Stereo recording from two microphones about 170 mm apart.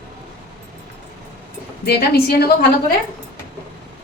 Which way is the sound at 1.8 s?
65° left (ahead or behind).